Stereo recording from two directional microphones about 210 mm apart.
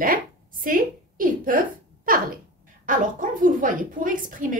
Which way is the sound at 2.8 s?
40° right (ahead or behind).